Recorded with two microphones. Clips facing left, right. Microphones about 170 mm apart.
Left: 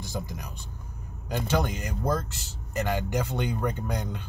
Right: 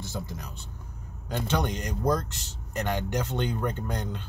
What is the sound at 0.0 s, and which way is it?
Speech, 15° left (ahead or behind).